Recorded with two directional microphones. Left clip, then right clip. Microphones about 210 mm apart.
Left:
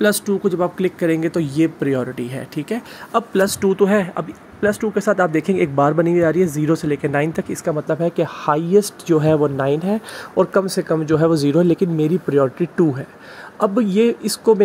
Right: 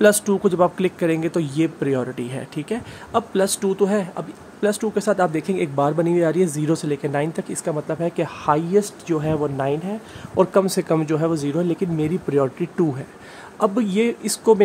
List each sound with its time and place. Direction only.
0.0 s speech: 15° right (ahead or behind); by 9.9 s 20° left (ahead or behind)
10.3 s speech: 5° left (ahead or behind)
11.1 s speech: 15° left (ahead or behind)